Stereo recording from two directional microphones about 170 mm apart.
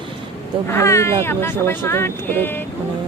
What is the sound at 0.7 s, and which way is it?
Speech, 15° left (ahead or behind).